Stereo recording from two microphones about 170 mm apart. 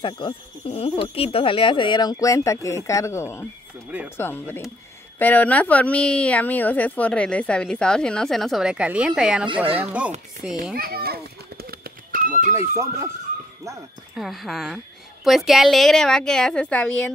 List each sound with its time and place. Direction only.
0.0 s speech: 35° left (ahead or behind); by 10.1 s 10° right (ahead or behind)
10.7 s children playing: 65° right (ahead or behind)
12.5 s speech: 15° right (ahead or behind)
14.1 s a woman's voice: centre (ahead or behind)